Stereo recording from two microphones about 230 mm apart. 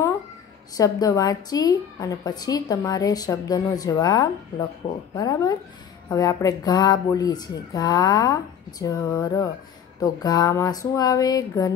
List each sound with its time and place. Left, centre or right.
0.7 s a woman's voice: centre